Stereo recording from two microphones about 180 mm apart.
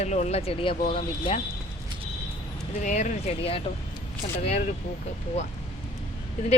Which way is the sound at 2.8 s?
40° left (ahead or behind).